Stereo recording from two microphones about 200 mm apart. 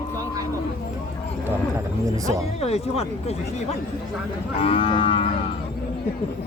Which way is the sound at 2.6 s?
30° left (ahead or behind).